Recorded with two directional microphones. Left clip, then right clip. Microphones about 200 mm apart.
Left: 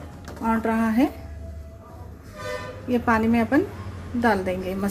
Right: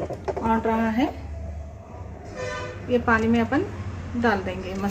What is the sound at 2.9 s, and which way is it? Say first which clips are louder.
A woman's voice: right 1 dB; 30° left (ahead or behind).